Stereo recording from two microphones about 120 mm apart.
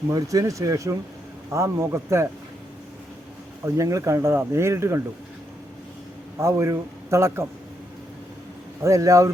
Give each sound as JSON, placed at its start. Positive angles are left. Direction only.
{"t": 0.1, "sound": "speech", "side_deg": -30}
{"t": 3.6, "sound": "speech", "side_deg": -25}
{"t": 6.4, "sound": "speech", "side_deg": -25}
{"t": 8.8, "sound": "speech", "side_deg": -25}